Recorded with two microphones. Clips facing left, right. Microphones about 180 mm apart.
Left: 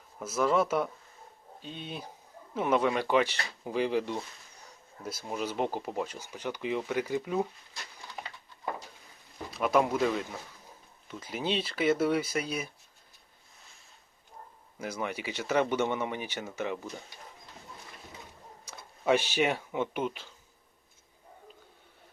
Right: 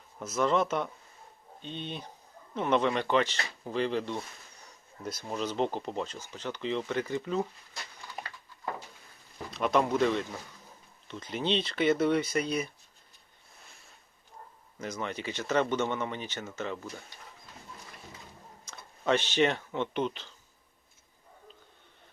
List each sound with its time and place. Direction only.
0.2 s speech: 5° left (ahead or behind)
9.5 s speech: 5° left (ahead or behind)
14.8 s speech: 10° left (ahead or behind)
18.6 s speech: 10° left (ahead or behind)